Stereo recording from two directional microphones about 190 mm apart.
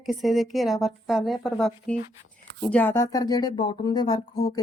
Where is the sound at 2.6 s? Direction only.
10° left (ahead or behind).